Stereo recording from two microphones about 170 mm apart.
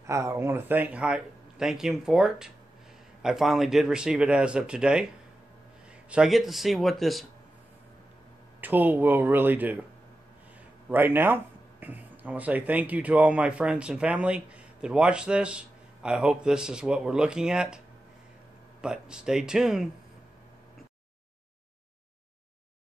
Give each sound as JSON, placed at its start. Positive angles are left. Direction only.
{"t": 0.0, "sound": "speech", "side_deg": -15}
{"t": 6.0, "sound": "speech", "side_deg": -5}
{"t": 8.5, "sound": "speech", "side_deg": -10}
{"t": 10.9, "sound": "speech", "side_deg": -10}